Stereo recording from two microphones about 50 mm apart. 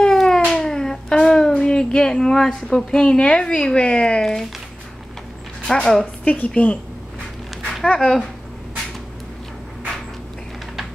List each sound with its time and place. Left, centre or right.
0.0 s cat: centre
0.5 s a sound: centre
5.7 s a woman's voice: centre
6.2 s a woman's voice: left
7.8 s speech: left